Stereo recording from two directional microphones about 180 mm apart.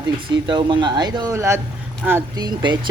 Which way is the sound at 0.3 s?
25° right (ahead or behind).